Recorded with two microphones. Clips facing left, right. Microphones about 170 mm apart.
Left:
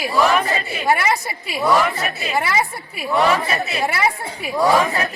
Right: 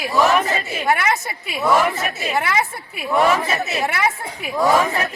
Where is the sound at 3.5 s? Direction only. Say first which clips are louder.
Even; 20° right (ahead or behind).